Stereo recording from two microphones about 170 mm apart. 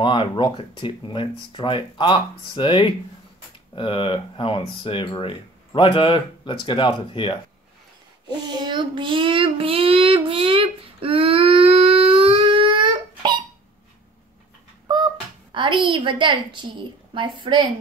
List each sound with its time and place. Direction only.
0.0 s speech: 30° left (ahead or behind)
8.3 s child singing: 25° right (ahead or behind)
15.5 s a woman's voice: 30° right (ahead or behind)